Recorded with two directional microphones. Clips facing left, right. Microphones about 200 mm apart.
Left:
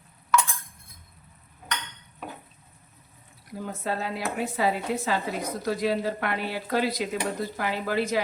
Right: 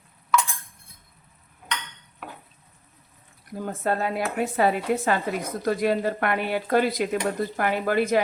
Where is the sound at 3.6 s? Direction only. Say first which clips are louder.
Right 5 dB; 55° right (ahead or behind).